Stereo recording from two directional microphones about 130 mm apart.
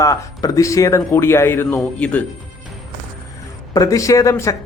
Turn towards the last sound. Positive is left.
turn(degrees=25)  # may be behind; listen again after turning